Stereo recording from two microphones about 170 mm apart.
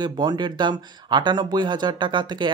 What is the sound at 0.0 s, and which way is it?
Speech, 25° right (ahead or behind).